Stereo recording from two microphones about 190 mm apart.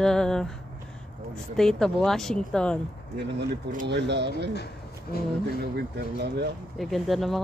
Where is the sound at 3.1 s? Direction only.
65° right (ahead or behind).